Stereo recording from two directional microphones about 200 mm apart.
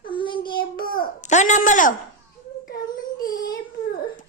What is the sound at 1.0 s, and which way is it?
Speech, 35° left (ahead or behind).